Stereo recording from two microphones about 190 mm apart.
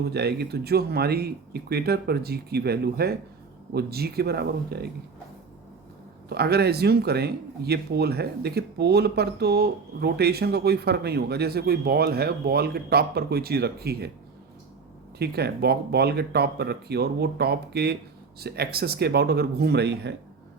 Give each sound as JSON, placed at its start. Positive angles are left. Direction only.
{"t": 0.1, "sound": "speech", "side_deg": -60}
{"t": 6.2, "sound": "speech", "side_deg": -60}
{"t": 15.2, "sound": "speech", "side_deg": -55}